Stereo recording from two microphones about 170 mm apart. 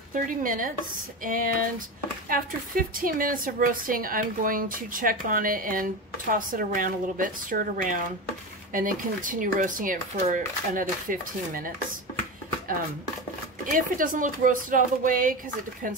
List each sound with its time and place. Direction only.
0.1 s speech: 55° right (ahead or behind)
13.7 s speech: 50° right (ahead or behind)